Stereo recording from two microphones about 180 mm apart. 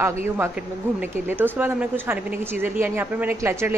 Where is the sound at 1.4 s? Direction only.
10° right (ahead or behind).